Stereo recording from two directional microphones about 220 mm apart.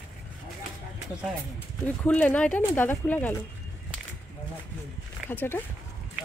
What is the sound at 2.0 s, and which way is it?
Speech, 5° left (ahead or behind).